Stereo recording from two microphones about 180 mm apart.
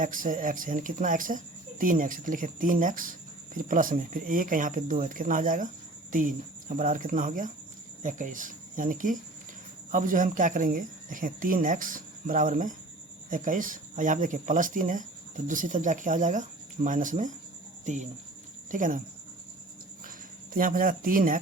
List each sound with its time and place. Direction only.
0.0 s speech: 50° right (ahead or behind)
20.1 s speech: 50° right (ahead or behind)